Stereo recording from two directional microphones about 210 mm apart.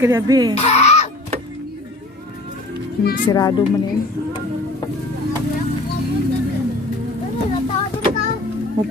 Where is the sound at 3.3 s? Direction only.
20° left (ahead or behind).